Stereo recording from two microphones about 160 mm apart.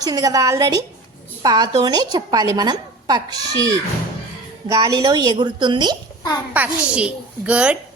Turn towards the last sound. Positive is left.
turn(degrees=-5)  # may be behind; listen again after turning